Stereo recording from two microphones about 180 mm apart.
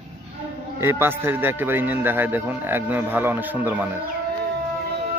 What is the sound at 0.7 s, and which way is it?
Speech, 15° right (ahead or behind).